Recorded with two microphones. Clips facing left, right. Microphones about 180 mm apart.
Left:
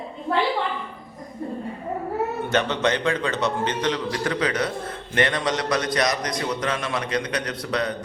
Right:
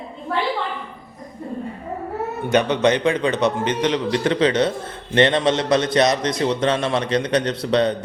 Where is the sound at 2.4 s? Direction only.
15° right (ahead or behind).